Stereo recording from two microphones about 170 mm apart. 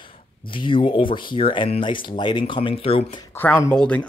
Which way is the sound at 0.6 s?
30° left (ahead or behind).